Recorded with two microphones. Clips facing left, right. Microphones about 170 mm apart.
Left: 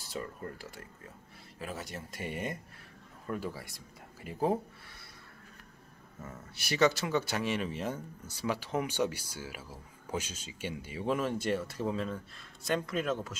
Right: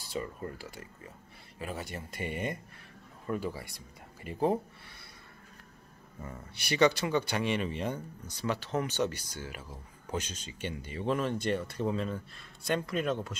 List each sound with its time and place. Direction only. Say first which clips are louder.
0.0 s speech: right 3 dB; centre (ahead or behind)
6.2 s speech: right 2 dB; centre (ahead or behind)